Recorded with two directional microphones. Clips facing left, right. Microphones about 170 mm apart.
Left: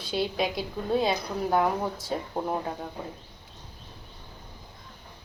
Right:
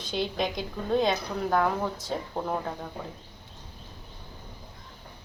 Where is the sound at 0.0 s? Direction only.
5° left (ahead or behind).